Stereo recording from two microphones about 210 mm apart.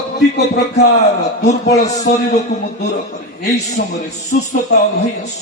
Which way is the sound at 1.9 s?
35° left (ahead or behind).